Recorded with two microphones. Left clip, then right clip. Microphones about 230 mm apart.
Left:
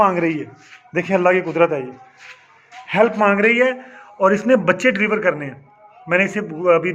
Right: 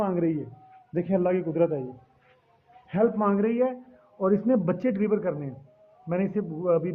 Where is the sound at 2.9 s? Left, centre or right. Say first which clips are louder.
Left 9 dB; centre.